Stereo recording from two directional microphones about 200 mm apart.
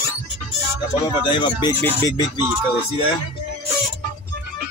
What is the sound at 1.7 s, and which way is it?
Speech, 10° left (ahead or behind).